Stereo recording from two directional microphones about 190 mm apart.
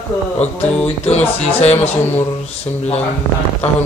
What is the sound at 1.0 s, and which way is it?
Speech, 35° left (ahead or behind).